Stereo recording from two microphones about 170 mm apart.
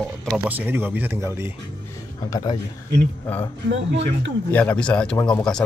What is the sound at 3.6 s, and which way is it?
Speech, 90° right.